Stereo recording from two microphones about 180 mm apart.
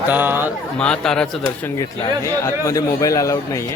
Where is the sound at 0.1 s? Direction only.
10° right (ahead or behind).